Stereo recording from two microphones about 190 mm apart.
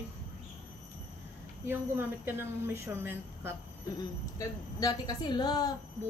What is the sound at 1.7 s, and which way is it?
Speech, 10° right (ahead or behind).